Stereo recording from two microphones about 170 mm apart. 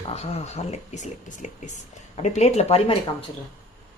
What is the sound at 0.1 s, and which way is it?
Speech, 40° left (ahead or behind).